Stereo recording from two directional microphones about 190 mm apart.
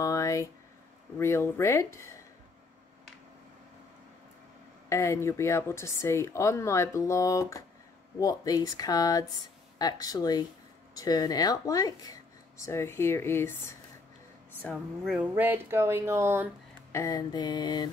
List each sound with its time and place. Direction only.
0.0 s a sound: 15° left (ahead or behind)
1.1 s speech: 15° left (ahead or behind)
4.8 s speech: 15° left (ahead or behind)
14.6 s speech: centre (ahead or behind)
16.9 s speech: 20° left (ahead or behind)